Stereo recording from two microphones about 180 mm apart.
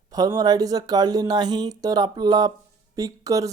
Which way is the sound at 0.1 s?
20° right (ahead or behind).